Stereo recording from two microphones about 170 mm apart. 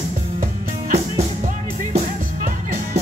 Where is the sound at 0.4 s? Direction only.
45° right (ahead or behind).